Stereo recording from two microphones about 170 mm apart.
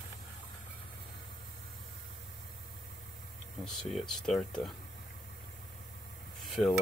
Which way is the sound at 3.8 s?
Centre (ahead or behind).